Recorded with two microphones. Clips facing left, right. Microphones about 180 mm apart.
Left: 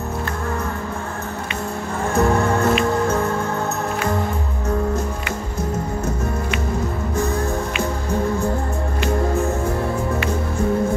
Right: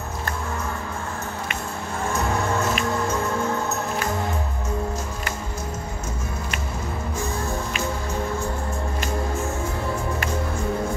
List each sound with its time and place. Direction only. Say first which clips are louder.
2.1 s music: left 7 dB; 60° left (ahead or behind)